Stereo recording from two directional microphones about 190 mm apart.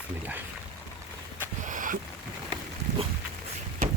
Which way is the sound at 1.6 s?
45° right (ahead or behind).